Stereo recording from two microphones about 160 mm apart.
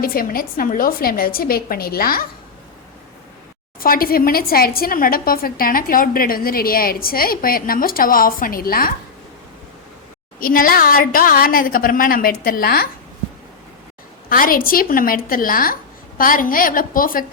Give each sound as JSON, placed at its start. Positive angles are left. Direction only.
{"t": 0.0, "sound": "a woman's voice", "side_deg": 65}
{"t": 3.8, "sound": "a woman's voice", "side_deg": 65}
{"t": 10.4, "sound": "a woman's voice", "side_deg": 60}
{"t": 14.3, "sound": "a woman's voice", "side_deg": 60}